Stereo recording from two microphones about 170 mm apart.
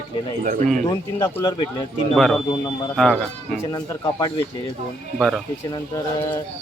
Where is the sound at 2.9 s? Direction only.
5° left (ahead or behind).